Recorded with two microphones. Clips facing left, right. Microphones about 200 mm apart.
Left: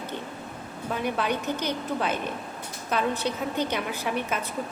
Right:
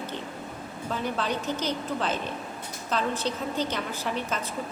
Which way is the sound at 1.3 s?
60° left (ahead or behind).